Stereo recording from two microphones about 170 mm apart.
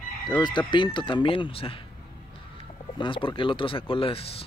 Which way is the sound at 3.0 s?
30° left (ahead or behind).